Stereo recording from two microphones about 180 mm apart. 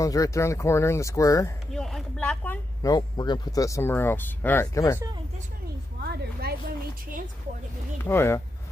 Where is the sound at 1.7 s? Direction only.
5° left (ahead or behind).